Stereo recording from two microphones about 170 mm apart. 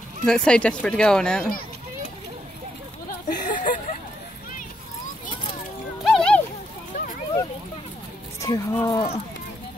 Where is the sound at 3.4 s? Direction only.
50° left (ahead or behind).